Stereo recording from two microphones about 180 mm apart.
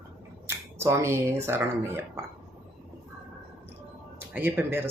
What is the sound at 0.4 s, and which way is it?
Speech, 15° right (ahead or behind).